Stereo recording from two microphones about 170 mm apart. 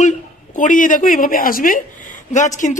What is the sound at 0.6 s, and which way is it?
A woman's voice, 50° left (ahead or behind).